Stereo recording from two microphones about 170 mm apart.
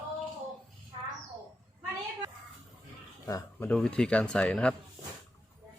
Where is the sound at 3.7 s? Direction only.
5° left (ahead or behind).